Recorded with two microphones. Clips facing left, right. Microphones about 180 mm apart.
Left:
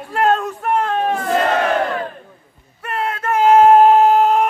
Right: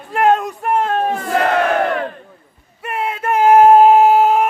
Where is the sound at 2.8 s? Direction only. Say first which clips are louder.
Right 1 dB; 10° right (ahead or behind).